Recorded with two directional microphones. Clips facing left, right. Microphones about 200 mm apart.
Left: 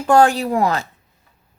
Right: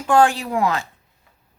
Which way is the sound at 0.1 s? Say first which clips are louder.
Left 3 dB; 40° left (ahead or behind).